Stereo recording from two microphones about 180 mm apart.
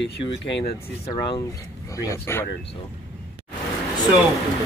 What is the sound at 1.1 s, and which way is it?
Speech, 25° left (ahead or behind).